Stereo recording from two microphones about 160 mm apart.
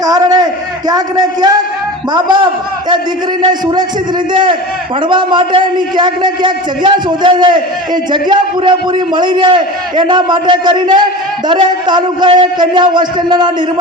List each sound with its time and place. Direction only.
0.0 s a man's voice: 25° right (ahead or behind)
3.4 s a man's voice: 30° right (ahead or behind)
5.0 s a man's voice: 30° right (ahead or behind)